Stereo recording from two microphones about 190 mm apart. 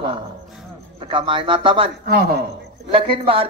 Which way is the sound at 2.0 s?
55° right (ahead or behind).